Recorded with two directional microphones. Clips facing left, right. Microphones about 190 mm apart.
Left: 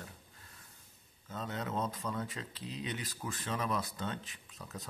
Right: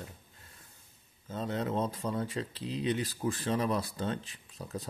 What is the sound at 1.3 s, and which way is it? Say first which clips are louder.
Speech: right 5 dB; 30° right (ahead or behind).